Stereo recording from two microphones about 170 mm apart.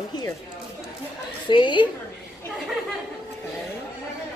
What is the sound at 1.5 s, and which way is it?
Speech, 30° left (ahead or behind).